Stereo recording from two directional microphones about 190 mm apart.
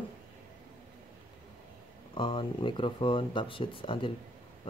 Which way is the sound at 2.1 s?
30° left (ahead or behind).